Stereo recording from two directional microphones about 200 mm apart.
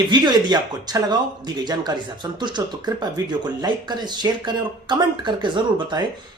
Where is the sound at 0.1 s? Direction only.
20° right (ahead or behind).